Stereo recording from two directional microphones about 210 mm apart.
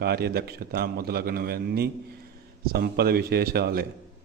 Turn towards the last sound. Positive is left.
turn(degrees=-45)  # may be behind; listen again after turning